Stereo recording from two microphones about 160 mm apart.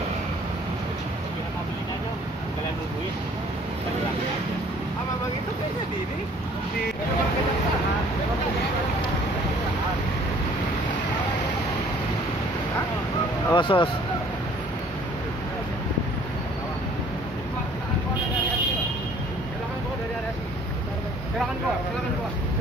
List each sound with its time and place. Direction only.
13.5 s speech: 30° left (ahead or behind)